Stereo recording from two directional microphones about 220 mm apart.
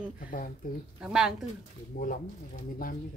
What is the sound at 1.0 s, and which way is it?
Speech, 5° right (ahead or behind).